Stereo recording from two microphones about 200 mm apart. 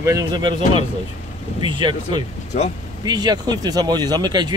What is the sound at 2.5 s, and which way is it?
Speech, 30° left (ahead or behind).